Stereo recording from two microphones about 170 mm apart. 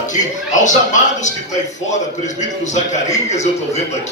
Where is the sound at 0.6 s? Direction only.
45° left (ahead or behind).